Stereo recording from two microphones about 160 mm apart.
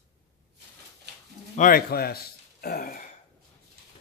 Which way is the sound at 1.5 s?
65° left (ahead or behind).